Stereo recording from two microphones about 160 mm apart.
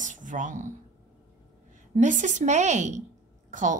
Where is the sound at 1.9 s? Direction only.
50° right (ahead or behind).